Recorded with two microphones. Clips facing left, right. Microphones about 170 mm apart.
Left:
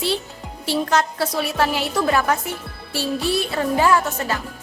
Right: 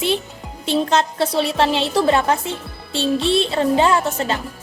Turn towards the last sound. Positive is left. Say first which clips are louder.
# right 1 dB
turn(degrees=-25)  # may be behind; listen again after turning